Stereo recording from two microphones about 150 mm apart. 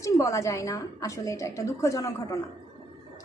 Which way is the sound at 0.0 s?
20° left (ahead or behind).